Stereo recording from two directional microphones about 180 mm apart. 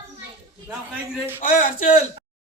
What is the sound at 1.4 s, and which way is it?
Speech, 50° left (ahead or behind).